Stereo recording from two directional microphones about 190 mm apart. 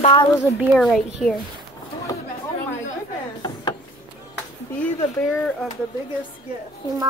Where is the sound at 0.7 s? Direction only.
Centre (ahead or behind).